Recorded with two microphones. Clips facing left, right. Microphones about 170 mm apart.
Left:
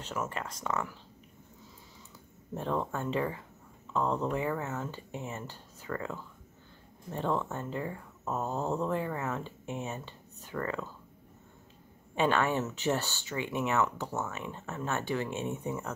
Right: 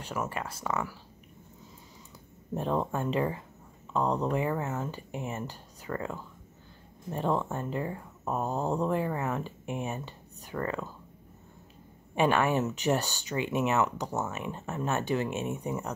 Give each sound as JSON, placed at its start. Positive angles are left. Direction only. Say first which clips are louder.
{"t": 0.0, "sound": "speech", "louder": "right 2 dB", "side_deg": -10}
{"t": 2.5, "sound": "speech", "louder": "right 3 dB", "side_deg": -15}
{"t": 12.2, "sound": "speech", "louder": "right 3 dB", "side_deg": -15}